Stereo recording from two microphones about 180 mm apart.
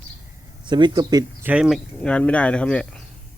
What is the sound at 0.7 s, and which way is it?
Speech, 25° right (ahead or behind).